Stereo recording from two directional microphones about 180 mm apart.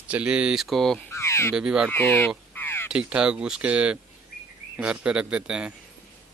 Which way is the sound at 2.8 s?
5° right (ahead or behind).